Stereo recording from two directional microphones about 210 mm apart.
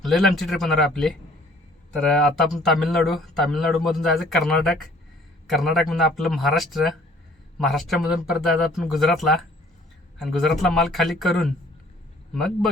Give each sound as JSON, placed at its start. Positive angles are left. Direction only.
{"t": 0.0, "sound": "speech", "side_deg": 0}